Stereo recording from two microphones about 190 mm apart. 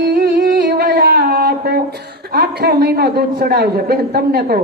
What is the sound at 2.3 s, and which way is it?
A woman's voice, 60° right (ahead or behind).